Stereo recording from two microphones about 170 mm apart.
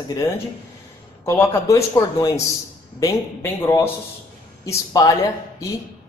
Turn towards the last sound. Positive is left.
turn(degrees=20)  # may be behind; listen again after turning